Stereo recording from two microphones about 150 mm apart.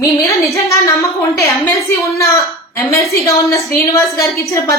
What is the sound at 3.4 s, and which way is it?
A woman's voice, 20° left (ahead or behind).